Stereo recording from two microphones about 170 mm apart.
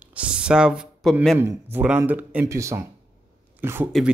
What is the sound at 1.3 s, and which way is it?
Speech, 10° right (ahead or behind).